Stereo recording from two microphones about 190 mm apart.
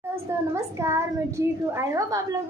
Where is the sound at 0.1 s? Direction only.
15° right (ahead or behind).